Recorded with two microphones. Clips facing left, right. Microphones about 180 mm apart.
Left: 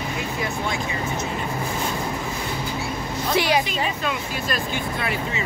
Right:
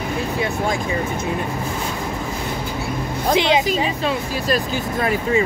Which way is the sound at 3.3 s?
20° right (ahead or behind).